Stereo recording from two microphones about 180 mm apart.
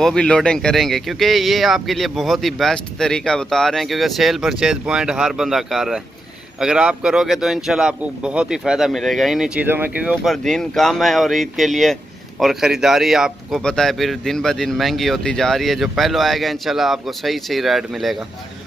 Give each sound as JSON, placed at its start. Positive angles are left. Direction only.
{"t": 0.0, "sound": "speech", "side_deg": 5}